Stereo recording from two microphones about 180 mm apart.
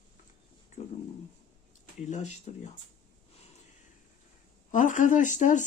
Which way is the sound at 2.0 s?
40° left (ahead or behind).